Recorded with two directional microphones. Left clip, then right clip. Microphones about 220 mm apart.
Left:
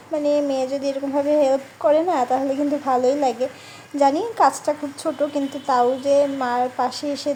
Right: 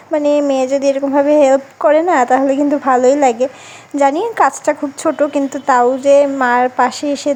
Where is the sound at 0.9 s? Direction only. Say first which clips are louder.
Right 6 dB; 25° right (ahead or behind).